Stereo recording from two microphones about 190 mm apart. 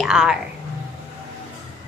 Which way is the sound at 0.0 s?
5° right (ahead or behind).